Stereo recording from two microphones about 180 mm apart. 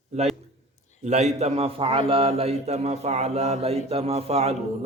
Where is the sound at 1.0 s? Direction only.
40° right (ahead or behind).